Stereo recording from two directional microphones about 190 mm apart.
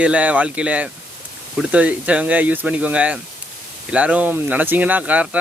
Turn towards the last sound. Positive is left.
turn(degrees=-5)  # may be behind; listen again after turning